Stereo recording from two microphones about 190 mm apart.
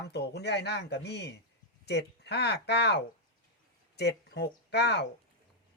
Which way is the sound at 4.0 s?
60° left (ahead or behind).